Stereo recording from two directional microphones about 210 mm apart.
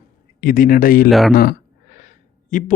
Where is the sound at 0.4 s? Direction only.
40° left (ahead or behind).